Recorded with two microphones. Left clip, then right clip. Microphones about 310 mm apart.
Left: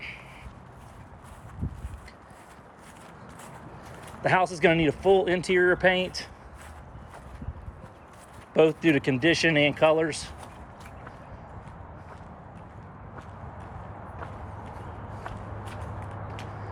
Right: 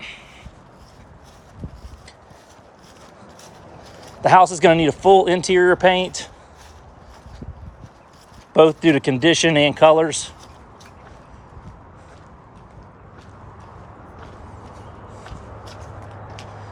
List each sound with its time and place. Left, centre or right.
4.2 s speech: centre
8.5 s speech: centre
9.3 s speech: right
9.8 s speech: right
10.1 s speech: right